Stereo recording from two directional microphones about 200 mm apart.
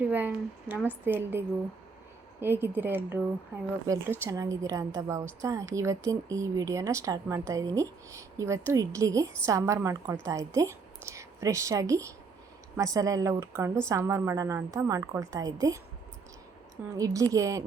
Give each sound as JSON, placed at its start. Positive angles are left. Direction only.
{"t": 0.0, "sound": "a woman's voice", "side_deg": -10}
{"t": 17.0, "sound": "a woman's voice", "side_deg": -20}